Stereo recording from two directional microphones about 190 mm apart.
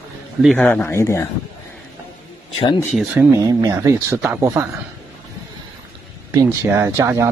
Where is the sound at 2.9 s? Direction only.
5° right (ahead or behind).